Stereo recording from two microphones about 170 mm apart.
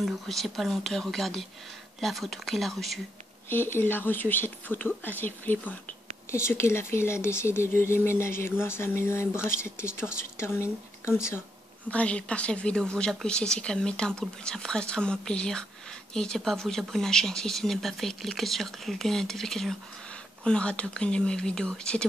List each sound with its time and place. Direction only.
0.0 s speech: centre (ahead or behind)
3.4 s a woman's voice: 15° left (ahead or behind)